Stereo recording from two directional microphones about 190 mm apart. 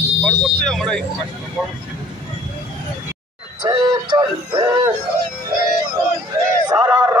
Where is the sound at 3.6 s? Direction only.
20° right (ahead or behind).